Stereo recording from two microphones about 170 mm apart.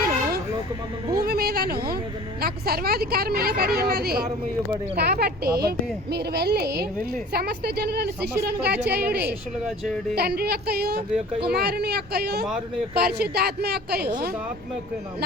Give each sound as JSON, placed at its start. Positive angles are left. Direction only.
{"t": 1.2, "sound": "a woman's voice", "side_deg": -65}
{"t": 9.6, "sound": "speech", "side_deg": 0}
{"t": 10.2, "sound": "a woman's voice", "side_deg": -70}